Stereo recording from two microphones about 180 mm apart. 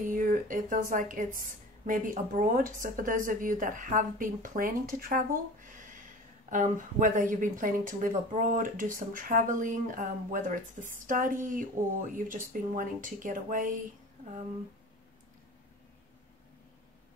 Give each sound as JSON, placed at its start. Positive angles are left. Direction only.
{"t": 0.0, "sound": "speech", "side_deg": -45}